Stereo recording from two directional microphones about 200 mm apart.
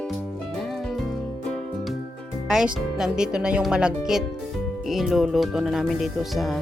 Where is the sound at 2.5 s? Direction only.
5° right (ahead or behind).